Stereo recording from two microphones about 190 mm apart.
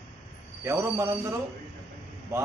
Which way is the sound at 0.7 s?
15° right (ahead or behind).